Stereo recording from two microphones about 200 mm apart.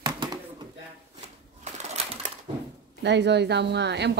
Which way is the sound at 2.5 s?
25° right (ahead or behind).